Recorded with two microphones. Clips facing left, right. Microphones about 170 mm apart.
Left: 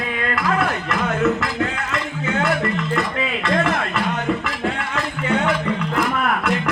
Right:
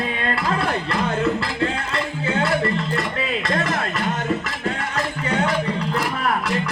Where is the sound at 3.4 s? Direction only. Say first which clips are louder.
Left 5 dB; 40° right (ahead or behind).